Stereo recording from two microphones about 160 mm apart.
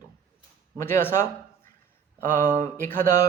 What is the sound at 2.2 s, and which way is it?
Speech, 60° right (ahead or behind).